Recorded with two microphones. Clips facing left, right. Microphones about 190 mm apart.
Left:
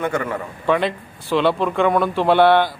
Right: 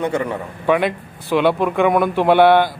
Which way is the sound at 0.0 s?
20° right (ahead or behind).